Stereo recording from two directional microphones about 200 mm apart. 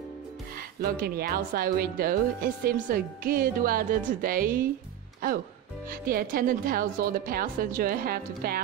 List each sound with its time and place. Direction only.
0.6 s speech: 50° right (ahead or behind)
5.9 s speech: 45° right (ahead or behind)